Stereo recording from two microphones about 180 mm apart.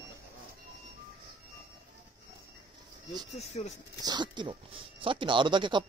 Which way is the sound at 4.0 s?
25° right (ahead or behind).